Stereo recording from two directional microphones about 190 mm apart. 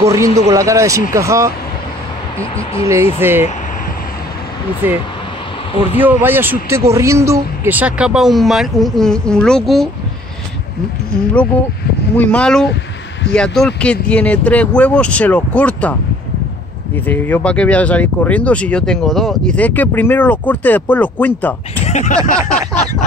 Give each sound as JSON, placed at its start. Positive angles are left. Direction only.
{"t": 0.0, "sound": "speech", "side_deg": -15}
{"t": 2.5, "sound": "speech", "side_deg": 30}
{"t": 3.2, "sound": "speech", "side_deg": -10}
{"t": 4.8, "sound": "speech", "side_deg": -10}
{"t": 12.2, "sound": "speech", "side_deg": 5}
{"t": 21.8, "sound": "a sound", "side_deg": 40}